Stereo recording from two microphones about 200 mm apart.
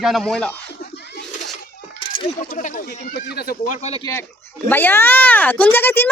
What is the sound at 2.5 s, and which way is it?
Speech, 40° left (ahead or behind).